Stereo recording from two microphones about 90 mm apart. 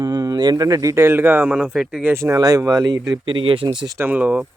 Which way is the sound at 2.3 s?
45° right (ahead or behind).